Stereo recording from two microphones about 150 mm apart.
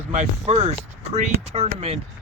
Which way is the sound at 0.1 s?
50° right (ahead or behind).